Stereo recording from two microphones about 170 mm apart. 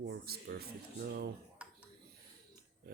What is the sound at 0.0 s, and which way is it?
Speech, 65° right (ahead or behind).